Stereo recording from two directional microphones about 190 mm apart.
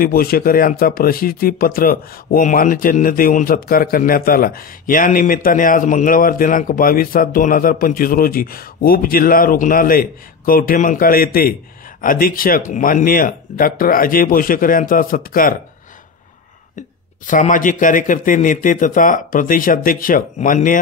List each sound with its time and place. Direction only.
0.0 s speech: 50° left (ahead or behind)
17.3 s speech: 45° left (ahead or behind)